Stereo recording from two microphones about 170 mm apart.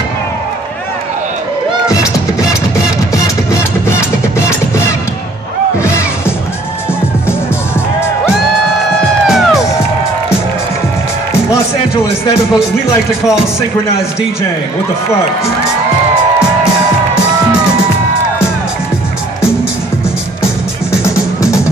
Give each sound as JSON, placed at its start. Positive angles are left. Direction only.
{"t": 4.4, "sound": "music", "side_deg": 15}
{"t": 9.3, "sound": "music", "side_deg": -5}
{"t": 21.0, "sound": "music", "side_deg": 20}